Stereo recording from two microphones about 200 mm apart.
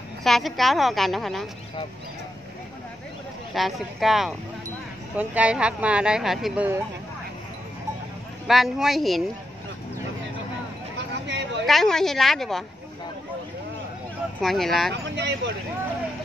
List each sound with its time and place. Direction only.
0.2 s a woman's voice: centre (ahead or behind)
3.5 s a woman's voice: centre (ahead or behind)
8.5 s a woman's voice: centre (ahead or behind)
11.2 s a sound: 60° right (ahead or behind)
11.6 s a woman's voice: centre (ahead or behind)
14.4 s a woman's voice: centre (ahead or behind)
14.9 s speech: 60° right (ahead or behind)